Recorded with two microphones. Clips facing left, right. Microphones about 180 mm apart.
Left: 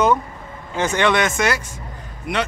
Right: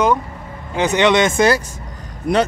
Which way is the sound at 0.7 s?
20° right (ahead or behind).